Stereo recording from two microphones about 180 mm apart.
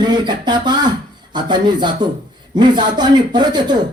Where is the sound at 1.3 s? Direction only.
25° right (ahead or behind).